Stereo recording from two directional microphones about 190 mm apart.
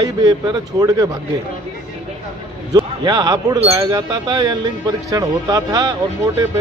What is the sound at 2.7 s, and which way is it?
A man's voice, 25° right (ahead or behind).